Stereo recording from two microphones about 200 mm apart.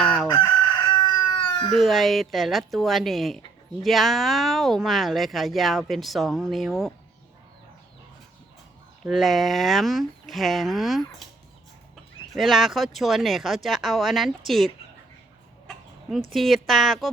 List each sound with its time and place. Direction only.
0.0 s chicken: 5° left (ahead or behind)
0.9 s a sound: 20° left (ahead or behind)
1.7 s speech: centre (ahead or behind)
9.0 s speech: centre (ahead or behind)
12.4 s speech: centre (ahead or behind)
15.6 s chicken: centre (ahead or behind)
16.3 s speech: centre (ahead or behind)